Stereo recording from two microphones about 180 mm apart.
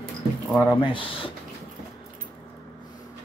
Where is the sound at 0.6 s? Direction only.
25° left (ahead or behind).